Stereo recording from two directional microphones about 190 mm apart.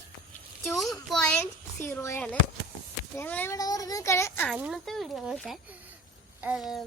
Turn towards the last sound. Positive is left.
turn(degrees=0)  # may be behind; listen again after turning